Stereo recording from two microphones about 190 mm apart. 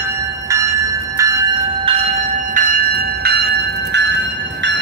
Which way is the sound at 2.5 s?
45° right (ahead or behind).